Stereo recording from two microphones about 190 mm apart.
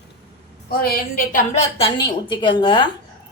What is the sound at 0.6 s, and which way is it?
Speech, 50° left (ahead or behind).